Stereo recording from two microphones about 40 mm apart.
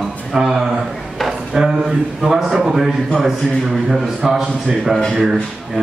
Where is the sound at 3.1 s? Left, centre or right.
Centre.